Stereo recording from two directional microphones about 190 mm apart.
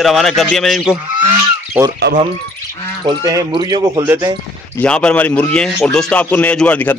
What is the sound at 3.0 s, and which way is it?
Speech, 20° right (ahead or behind).